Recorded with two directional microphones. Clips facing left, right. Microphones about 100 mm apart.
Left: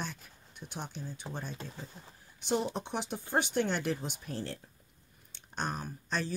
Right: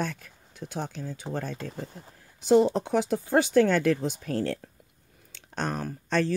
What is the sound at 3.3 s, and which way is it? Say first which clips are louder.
Speech: right 9 dB; 90° right.